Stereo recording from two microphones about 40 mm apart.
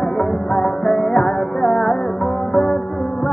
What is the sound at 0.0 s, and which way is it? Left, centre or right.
Music, centre.